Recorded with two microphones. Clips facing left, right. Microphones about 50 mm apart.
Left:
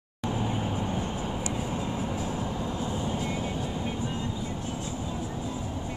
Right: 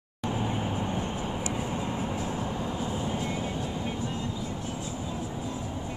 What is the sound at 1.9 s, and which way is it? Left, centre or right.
Music, right.